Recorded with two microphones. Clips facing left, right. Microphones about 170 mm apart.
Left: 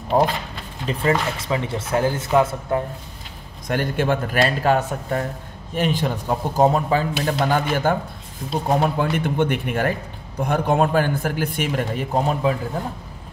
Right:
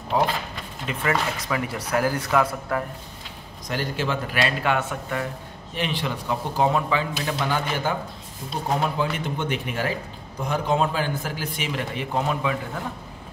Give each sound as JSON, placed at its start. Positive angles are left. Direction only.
{"t": 0.1, "sound": "a man's voice", "side_deg": 50}
{"t": 0.8, "sound": "speech", "side_deg": 30}
{"t": 3.6, "sound": "a man's voice", "side_deg": 55}